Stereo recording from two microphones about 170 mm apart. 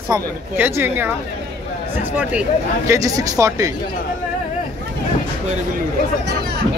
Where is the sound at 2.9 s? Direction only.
20° right (ahead or behind).